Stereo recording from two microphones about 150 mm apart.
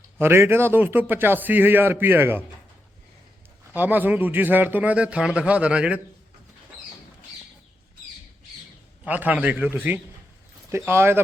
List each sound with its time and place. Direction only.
0.2 s a man's voice: 15° right (ahead or behind)
3.7 s a man's voice: 10° right (ahead or behind)
9.0 s a man's voice: 10° right (ahead or behind)